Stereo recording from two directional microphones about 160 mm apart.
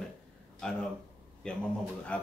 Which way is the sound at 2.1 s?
10° left (ahead or behind).